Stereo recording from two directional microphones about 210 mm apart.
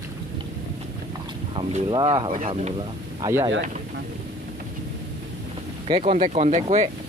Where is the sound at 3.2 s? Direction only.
15° right (ahead or behind).